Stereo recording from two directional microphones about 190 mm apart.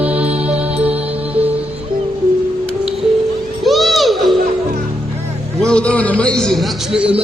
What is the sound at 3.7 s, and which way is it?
Music, centre (ahead or behind).